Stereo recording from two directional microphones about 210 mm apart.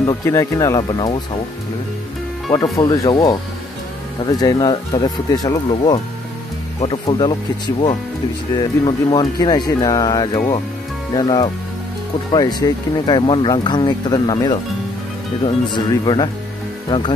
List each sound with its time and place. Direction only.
0.0 s speech: 15° left (ahead or behind)
2.5 s speech: 15° left (ahead or behind)